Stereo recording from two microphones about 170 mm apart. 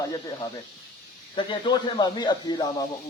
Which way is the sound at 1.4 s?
25° left (ahead or behind).